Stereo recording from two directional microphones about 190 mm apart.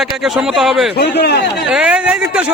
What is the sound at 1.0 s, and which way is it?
Speech, 60° left (ahead or behind).